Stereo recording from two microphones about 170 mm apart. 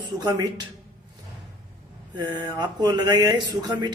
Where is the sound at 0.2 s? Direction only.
25° right (ahead or behind).